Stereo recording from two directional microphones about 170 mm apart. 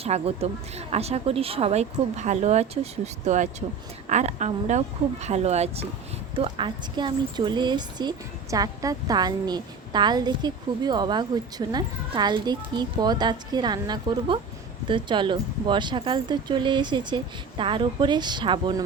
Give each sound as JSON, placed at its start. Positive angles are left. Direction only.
{"t": 0.0, "sound": "a woman's voice", "side_deg": -35}
{"t": 6.4, "sound": "speech", "side_deg": -30}